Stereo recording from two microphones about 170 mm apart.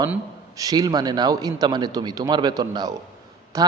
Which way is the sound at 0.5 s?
20° right (ahead or behind).